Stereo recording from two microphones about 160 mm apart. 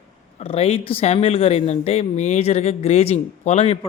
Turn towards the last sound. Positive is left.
turn(degrees=40)  # may be behind; listen again after turning